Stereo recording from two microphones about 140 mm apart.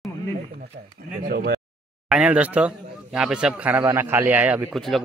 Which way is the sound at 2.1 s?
10° right (ahead or behind).